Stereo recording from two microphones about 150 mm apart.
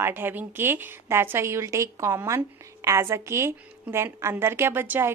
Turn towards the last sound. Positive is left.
turn(degrees=-15)  # may be behind; listen again after turning